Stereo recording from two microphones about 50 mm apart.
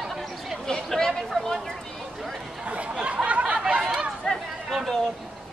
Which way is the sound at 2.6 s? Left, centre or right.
Right.